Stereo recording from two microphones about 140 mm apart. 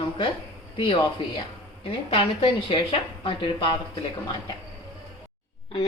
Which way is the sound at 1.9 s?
40° left (ahead or behind).